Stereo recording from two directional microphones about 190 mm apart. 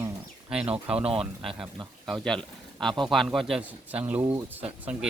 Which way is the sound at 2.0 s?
Centre (ahead or behind).